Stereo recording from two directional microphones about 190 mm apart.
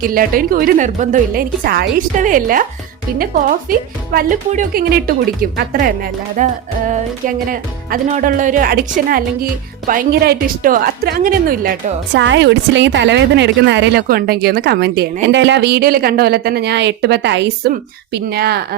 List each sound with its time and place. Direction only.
0.0 s speech: 50° right (ahead or behind)
6.4 s music: 40° right (ahead or behind)
7.3 s speech: 45° right (ahead or behind)
12.1 s a woman's voice: 70° right (ahead or behind)